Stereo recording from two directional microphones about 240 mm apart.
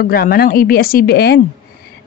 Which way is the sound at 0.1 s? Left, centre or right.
Left.